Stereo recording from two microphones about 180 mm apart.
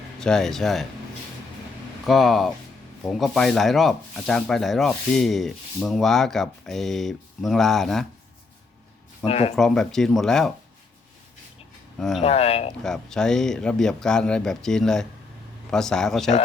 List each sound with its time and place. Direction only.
0.2 s speech: 5° left (ahead or behind)
2.0 s speech: centre (ahead or behind)
9.2 s speech: 35° left (ahead or behind)
9.6 s speech: centre (ahead or behind)
11.9 s speech: centre (ahead or behind)
12.2 s speech: 35° left (ahead or behind)
12.8 s speech: 5° left (ahead or behind)